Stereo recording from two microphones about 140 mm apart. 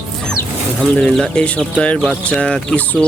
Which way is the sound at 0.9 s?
5° left (ahead or behind).